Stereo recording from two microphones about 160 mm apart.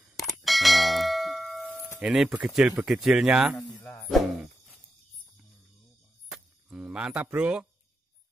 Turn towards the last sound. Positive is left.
turn(degrees=-5)  # may be behind; listen again after turning